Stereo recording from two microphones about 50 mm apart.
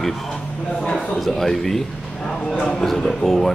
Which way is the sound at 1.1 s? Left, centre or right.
Centre.